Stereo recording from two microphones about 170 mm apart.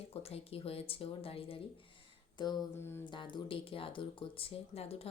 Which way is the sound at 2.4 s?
25° left (ahead or behind).